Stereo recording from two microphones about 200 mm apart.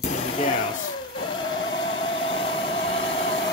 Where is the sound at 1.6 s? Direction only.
70° left (ahead or behind).